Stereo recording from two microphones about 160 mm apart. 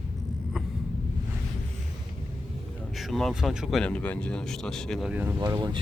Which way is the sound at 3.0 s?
Centre (ahead or behind).